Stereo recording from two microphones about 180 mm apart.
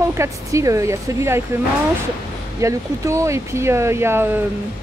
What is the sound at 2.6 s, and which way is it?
Speech, 15° right (ahead or behind).